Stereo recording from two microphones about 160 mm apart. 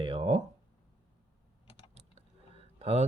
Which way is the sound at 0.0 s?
35° right (ahead or behind).